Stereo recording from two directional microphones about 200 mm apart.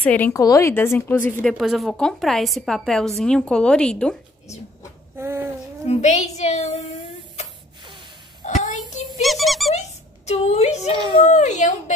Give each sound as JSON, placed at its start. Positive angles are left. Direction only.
{"t": 0.0, "sound": "a woman's voice", "side_deg": 10}
{"t": 1.5, "sound": "a woman's voice", "side_deg": 0}
{"t": 5.1, "sound": "a sound", "side_deg": -10}
{"t": 5.9, "sound": "a woman's voice", "side_deg": 35}
{"t": 8.4, "sound": "child singing", "side_deg": 35}
{"t": 9.2, "sound": "squeak", "side_deg": 0}
{"t": 9.8, "sound": "a child's voice", "side_deg": 35}